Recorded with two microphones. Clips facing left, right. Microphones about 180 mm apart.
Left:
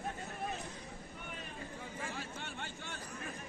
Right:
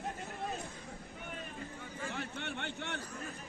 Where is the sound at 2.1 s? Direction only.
65° right (ahead or behind).